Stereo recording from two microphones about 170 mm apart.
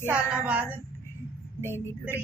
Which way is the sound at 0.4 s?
5° right (ahead or behind).